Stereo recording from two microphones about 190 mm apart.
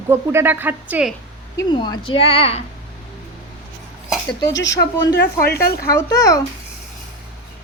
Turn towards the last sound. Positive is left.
turn(degrees=20)  # may be behind; listen again after turning